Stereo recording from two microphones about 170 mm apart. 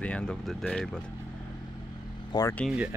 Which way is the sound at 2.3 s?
25° left (ahead or behind).